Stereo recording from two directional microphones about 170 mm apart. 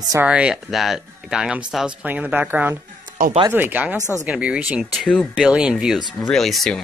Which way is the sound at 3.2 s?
55° right (ahead or behind).